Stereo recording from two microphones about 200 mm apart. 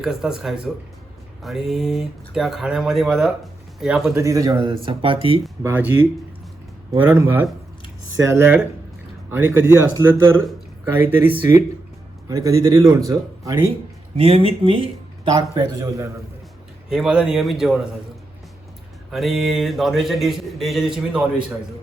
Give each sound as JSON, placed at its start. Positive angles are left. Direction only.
{"t": 0.0, "sound": "speech", "side_deg": 0}
{"t": 4.1, "sound": "speech", "side_deg": -15}
{"t": 5.6, "sound": "speech", "side_deg": -10}
{"t": 6.9, "sound": "speech", "side_deg": -15}
{"t": 12.3, "sound": "speech", "side_deg": -15}
{"t": 14.2, "sound": "speech", "side_deg": -30}
{"t": 16.9, "sound": "speech", "side_deg": -5}
{"t": 19.1, "sound": "speech", "side_deg": 0}